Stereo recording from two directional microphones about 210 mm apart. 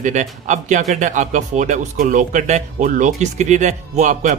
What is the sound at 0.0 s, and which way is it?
Speech, 35° right (ahead or behind).